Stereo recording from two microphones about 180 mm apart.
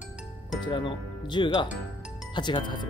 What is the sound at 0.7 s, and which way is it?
Speech, 25° left (ahead or behind).